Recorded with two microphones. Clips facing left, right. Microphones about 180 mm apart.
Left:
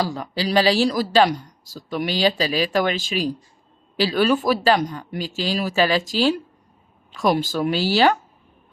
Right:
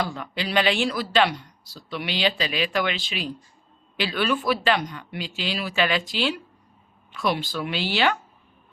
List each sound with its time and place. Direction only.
0.0 s speech: 35° left (ahead or behind)